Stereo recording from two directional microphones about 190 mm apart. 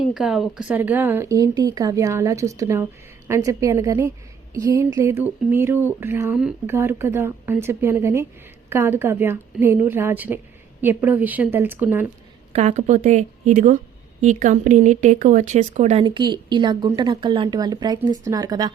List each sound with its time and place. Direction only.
0.0 s speech: 5° right (ahead or behind)
12.5 s speech: 35° right (ahead or behind)
16.0 s speech: 25° right (ahead or behind)